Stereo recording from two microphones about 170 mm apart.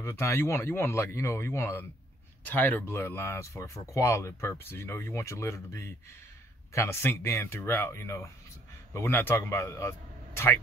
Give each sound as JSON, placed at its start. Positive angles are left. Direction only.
{"t": 0.0, "sound": "a man's voice", "side_deg": 15}